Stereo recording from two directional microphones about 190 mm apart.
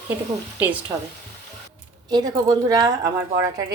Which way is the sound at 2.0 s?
20° right (ahead or behind).